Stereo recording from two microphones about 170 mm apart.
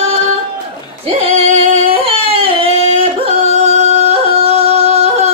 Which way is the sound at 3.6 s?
40° right (ahead or behind).